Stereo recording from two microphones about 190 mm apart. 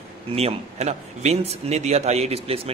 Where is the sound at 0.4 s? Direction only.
35° right (ahead or behind).